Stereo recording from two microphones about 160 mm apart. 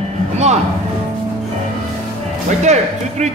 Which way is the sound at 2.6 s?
45° right (ahead or behind).